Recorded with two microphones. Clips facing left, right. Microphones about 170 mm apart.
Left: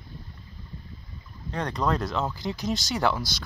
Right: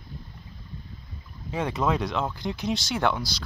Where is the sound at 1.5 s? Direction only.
5° right (ahead or behind).